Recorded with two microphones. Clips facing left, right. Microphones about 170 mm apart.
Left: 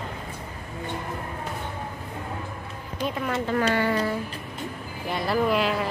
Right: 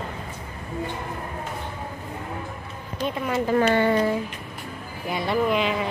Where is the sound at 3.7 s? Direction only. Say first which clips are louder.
Right 4 dB; 20° right (ahead or behind).